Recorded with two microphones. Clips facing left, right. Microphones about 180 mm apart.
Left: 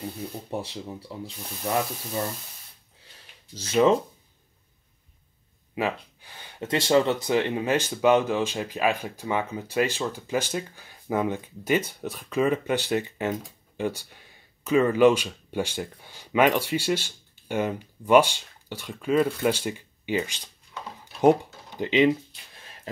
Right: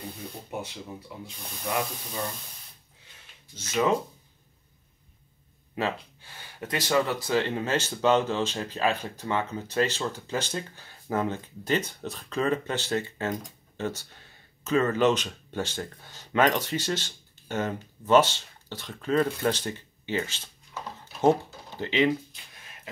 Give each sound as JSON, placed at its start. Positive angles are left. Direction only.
{"t": 0.5, "sound": "speech", "side_deg": 30}
{"t": 3.5, "sound": "speech", "side_deg": 30}
{"t": 5.8, "sound": "speech", "side_deg": 15}
{"t": 21.0, "sound": "typing", "side_deg": 15}
{"t": 21.7, "sound": "speech", "side_deg": 20}